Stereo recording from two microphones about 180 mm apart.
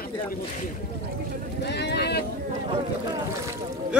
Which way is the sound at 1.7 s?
65° left (ahead or behind).